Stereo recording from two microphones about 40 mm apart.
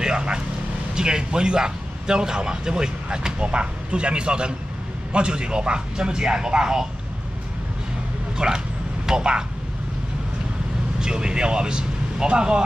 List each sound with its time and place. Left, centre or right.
0.0 s vehicle: right
0.9 s speech: centre
8.4 s vehicle: centre
11.0 s speech: centre